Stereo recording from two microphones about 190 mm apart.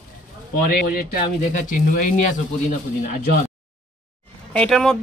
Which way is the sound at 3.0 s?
45° left (ahead or behind).